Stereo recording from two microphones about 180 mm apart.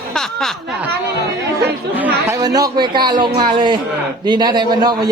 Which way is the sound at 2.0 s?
10° right (ahead or behind).